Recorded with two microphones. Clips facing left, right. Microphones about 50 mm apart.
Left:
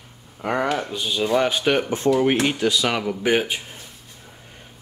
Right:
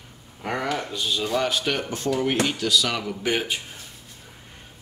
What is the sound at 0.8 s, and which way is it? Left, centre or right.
Speech, centre.